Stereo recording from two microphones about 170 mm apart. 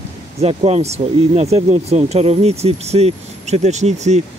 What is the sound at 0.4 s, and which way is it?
Speech, 35° right (ahead or behind).